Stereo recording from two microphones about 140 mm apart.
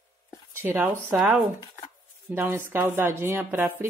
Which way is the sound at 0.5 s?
15° right (ahead or behind).